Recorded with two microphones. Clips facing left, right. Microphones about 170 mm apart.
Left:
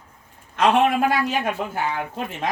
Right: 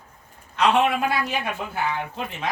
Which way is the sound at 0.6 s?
50° left (ahead or behind).